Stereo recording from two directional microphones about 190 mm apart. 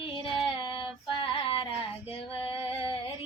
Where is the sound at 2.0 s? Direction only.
30° left (ahead or behind).